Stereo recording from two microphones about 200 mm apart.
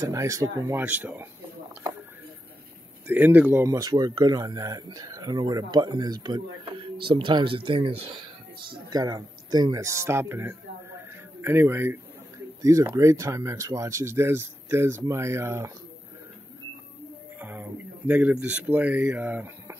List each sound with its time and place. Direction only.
0.0 s speech: 15° right (ahead or behind)
3.1 s speech: 10° right (ahead or behind)
17.4 s speech: 10° right (ahead or behind)